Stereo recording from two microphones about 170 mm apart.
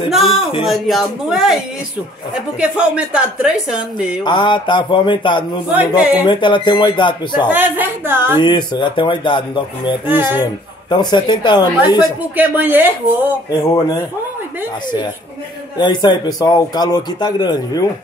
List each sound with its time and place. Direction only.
0.1 s a sound: centre (ahead or behind)
0.6 s a woman's voice: centre (ahead or behind)
4.2 s a man's voice: 25° left (ahead or behind)
5.7 s a woman's voice: 10° right (ahead or behind)
6.2 s a man's voice: 25° left (ahead or behind)
7.4 s a woman's voice: 10° right (ahead or behind)
8.4 s a man's voice: 25° left (ahead or behind)
10.0 s a woman's voice: 10° right (ahead or behind)
10.4 s a man's voice: 25° left (ahead or behind)
12.4 s a woman's voice: 10° right (ahead or behind)
15.8 s a man's voice: 25° left (ahead or behind)